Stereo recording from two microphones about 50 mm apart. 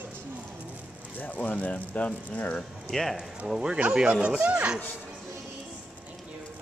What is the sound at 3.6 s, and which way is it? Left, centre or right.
Speech, centre.